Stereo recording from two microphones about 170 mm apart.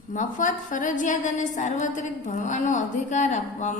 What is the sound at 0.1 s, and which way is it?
A woman's voice, 50° left (ahead or behind).